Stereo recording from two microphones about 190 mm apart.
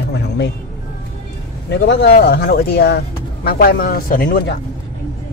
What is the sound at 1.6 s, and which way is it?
Speech, 65° left (ahead or behind).